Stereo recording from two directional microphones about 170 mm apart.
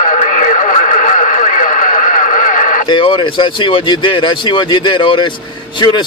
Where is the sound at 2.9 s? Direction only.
30° left (ahead or behind).